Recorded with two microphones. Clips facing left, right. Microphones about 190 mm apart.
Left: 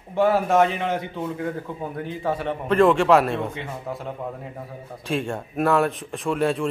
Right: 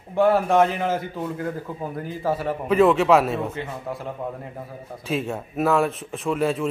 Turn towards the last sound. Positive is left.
turn(degrees=0)  # may be behind; listen again after turning